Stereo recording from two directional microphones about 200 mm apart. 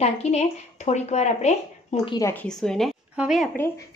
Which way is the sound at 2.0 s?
15° left (ahead or behind).